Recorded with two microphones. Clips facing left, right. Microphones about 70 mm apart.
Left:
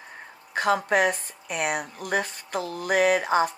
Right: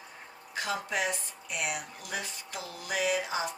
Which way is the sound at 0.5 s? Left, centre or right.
Left.